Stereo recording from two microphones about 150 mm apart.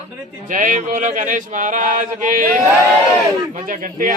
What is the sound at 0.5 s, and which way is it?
A man's voice, 60° right (ahead or behind).